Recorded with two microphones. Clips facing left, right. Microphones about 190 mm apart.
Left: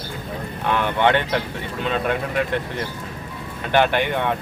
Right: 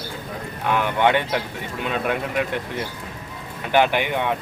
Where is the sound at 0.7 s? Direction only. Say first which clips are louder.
Even; 10° right (ahead or behind).